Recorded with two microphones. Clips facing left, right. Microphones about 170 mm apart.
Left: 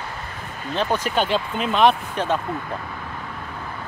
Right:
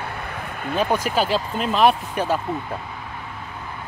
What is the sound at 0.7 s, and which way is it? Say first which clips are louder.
Speech: right 1 dB; 10° right (ahead or behind).